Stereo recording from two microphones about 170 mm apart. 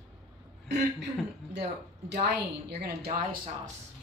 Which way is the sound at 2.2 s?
70° right (ahead or behind).